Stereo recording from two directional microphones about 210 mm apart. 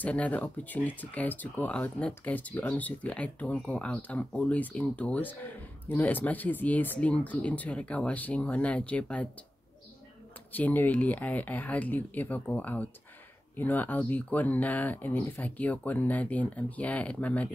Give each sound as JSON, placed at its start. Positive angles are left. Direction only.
{"t": 0.0, "sound": "speech", "side_deg": 5}
{"t": 10.5, "sound": "speech", "side_deg": 10}